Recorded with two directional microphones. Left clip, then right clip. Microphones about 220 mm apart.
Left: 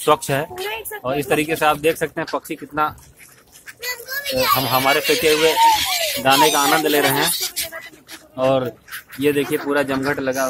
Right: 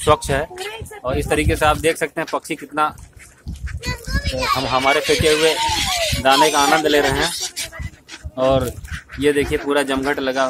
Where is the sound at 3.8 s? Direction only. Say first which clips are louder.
Left 1 dB; 50° left (ahead or behind).